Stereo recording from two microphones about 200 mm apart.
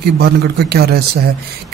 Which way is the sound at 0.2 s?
55° right (ahead or behind).